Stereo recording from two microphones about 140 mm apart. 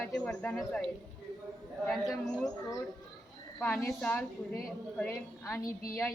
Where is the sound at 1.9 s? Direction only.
Centre (ahead or behind).